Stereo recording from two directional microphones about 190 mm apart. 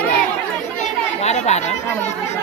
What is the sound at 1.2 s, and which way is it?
Speech, 35° left (ahead or behind).